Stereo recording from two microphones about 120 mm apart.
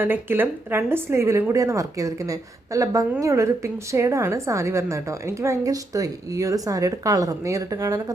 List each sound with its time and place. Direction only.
0.0 s a woman's voice: 15° right (ahead or behind)